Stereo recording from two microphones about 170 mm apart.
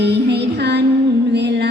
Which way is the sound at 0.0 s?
80° right.